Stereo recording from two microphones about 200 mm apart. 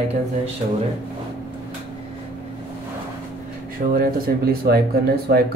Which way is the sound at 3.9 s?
50° right (ahead or behind).